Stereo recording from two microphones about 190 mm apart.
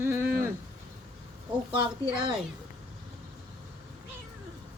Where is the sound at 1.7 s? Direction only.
25° right (ahead or behind).